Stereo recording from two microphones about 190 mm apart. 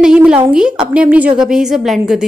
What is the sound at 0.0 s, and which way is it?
A woman's voice, 5° right (ahead or behind).